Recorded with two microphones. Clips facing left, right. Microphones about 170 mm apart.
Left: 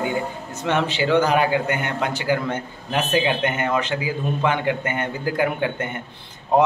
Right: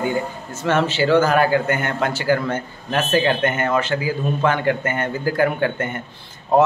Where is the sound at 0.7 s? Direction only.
15° left (ahead or behind).